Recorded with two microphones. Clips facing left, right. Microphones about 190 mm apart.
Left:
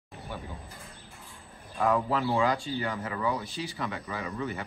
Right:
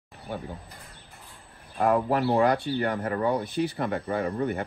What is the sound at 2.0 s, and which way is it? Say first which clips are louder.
Speech: right 4 dB; 60° right (ahead or behind).